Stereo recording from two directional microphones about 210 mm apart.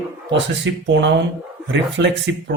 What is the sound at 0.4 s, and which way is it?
Speech, 55° right (ahead or behind).